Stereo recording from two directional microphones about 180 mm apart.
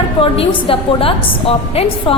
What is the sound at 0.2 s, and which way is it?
A woman's voice, 30° left (ahead or behind).